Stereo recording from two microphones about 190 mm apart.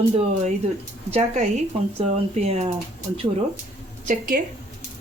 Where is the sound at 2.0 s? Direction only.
35° right (ahead or behind).